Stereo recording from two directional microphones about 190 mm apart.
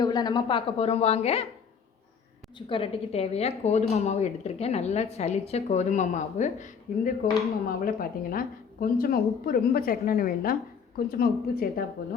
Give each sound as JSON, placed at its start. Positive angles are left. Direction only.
{"t": 0.0, "sound": "a woman's voice", "side_deg": 20}
{"t": 2.6, "sound": "a woman's voice", "side_deg": 30}